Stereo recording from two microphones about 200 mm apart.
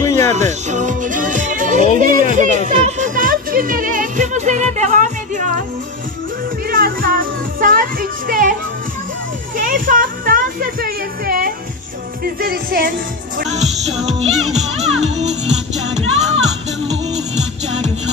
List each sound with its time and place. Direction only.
0.0 s music: 15° left (ahead or behind)
0.3 s speech: 35° right (ahead or behind)
6.7 s music: 45° right (ahead or behind)
9.6 s speech: 40° right (ahead or behind)
15.0 s music: 35° right (ahead or behind)